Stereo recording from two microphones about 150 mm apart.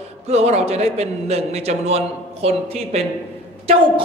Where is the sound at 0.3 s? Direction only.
45° right (ahead or behind).